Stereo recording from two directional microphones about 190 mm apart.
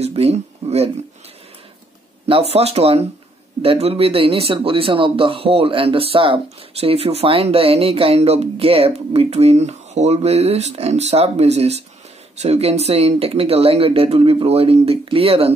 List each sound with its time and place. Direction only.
0.0 s speech: 35° right (ahead or behind)
2.5 s speech: 30° right (ahead or behind)